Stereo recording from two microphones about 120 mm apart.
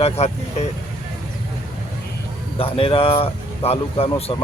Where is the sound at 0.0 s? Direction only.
60° left (ahead or behind).